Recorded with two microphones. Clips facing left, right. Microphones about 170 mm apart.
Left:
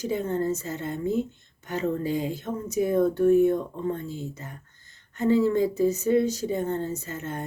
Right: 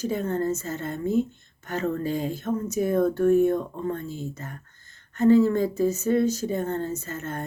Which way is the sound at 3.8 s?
20° left (ahead or behind).